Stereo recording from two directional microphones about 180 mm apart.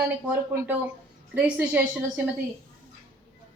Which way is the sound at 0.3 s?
10° right (ahead or behind).